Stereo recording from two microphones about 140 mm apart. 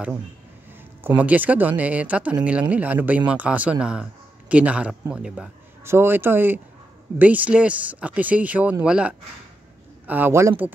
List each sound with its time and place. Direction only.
1.0 s a man's voice: 10° right (ahead or behind)
5.9 s a man's voice: 15° right (ahead or behind)